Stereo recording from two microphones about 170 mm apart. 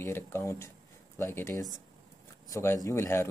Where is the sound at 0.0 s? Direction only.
15° left (ahead or behind).